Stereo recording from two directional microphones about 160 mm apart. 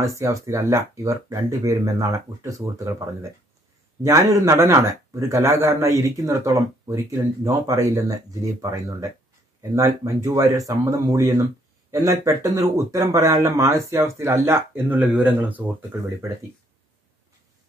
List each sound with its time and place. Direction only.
0.0 s speech: 20° right (ahead or behind)